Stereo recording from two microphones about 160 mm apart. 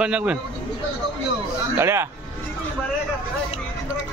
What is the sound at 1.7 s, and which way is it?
Speech, 15° right (ahead or behind).